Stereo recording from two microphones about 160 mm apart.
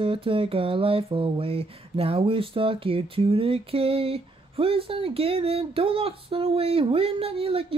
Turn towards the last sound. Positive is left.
turn(degrees=-35)  # may be behind; listen again after turning